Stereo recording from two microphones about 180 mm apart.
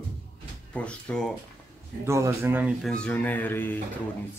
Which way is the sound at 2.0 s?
15° right (ahead or behind).